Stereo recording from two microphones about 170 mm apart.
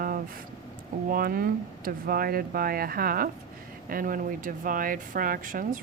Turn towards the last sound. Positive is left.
turn(degrees=-55)  # may be behind; listen again after turning